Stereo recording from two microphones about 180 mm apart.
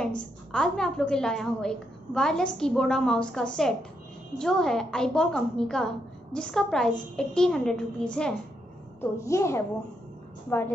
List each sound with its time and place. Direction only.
0.0 s a woman's voice: 5° left (ahead or behind)
9.2 s a woman's voice: 15° left (ahead or behind)